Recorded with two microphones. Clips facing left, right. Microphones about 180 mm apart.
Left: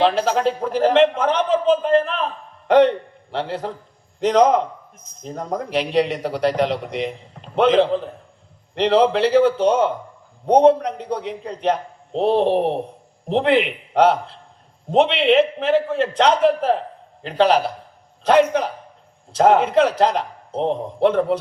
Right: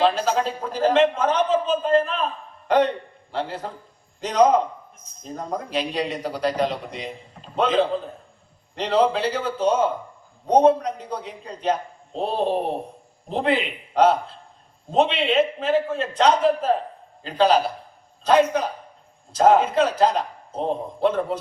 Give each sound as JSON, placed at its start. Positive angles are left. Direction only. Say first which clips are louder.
{"t": 0.0, "sound": "a man's voice", "louder": "left 3 dB", "side_deg": 65}